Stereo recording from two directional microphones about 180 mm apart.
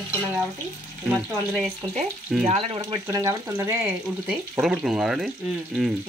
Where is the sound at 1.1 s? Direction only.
Centre (ahead or behind).